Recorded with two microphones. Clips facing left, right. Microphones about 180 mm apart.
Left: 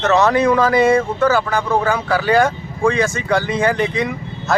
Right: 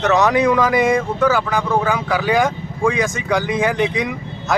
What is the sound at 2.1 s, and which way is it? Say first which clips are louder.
A man's voice: left 3 dB; 15° right (ahead or behind).